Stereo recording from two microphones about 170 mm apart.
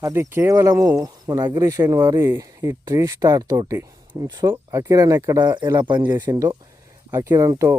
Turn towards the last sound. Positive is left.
turn(degrees=-15)  # may be behind; listen again after turning